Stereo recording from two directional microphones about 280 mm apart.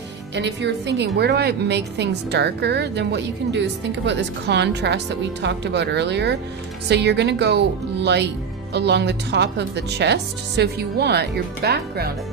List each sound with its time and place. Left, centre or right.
0.3 s a woman's voice: right